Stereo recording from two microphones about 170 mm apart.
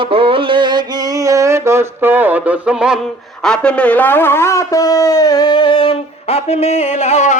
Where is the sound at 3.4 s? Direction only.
5° left (ahead or behind).